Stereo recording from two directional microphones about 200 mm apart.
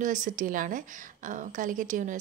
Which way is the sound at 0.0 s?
40° right (ahead or behind).